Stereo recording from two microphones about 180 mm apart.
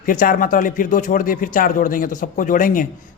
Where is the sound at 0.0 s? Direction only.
50° left (ahead or behind).